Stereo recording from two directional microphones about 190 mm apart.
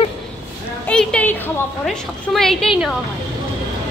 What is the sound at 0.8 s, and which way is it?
A woman's voice, 5° left (ahead or behind).